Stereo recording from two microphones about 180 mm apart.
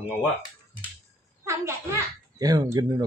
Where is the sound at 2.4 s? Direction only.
20° right (ahead or behind).